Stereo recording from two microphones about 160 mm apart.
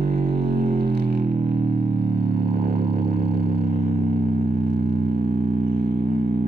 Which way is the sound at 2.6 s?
35° right (ahead or behind).